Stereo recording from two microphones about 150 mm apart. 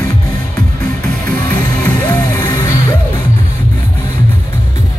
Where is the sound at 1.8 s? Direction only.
20° left (ahead or behind).